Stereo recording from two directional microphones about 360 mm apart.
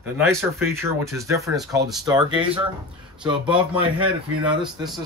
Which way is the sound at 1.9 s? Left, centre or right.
Centre.